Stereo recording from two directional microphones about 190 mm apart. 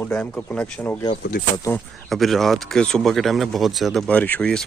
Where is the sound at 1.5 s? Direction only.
15° left (ahead or behind).